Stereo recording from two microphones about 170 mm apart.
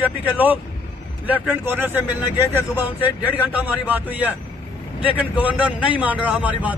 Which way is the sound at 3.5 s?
10° right (ahead or behind).